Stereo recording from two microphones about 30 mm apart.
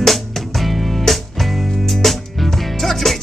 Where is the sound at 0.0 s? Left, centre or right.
Centre.